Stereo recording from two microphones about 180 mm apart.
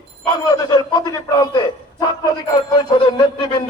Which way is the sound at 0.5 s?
20° left (ahead or behind).